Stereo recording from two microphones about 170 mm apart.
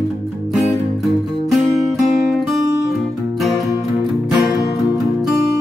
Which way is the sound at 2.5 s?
20° right (ahead or behind).